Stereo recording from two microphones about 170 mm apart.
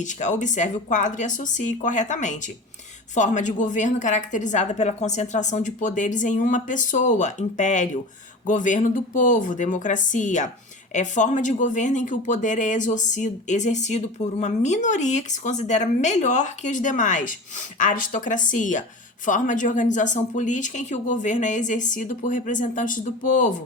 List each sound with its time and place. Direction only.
0.0 s speech: 45° left (ahead or behind)